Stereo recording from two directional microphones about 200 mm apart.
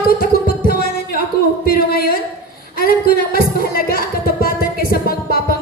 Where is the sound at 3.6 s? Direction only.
50° left (ahead or behind).